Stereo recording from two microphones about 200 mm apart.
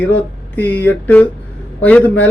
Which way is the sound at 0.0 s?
10° left (ahead or behind).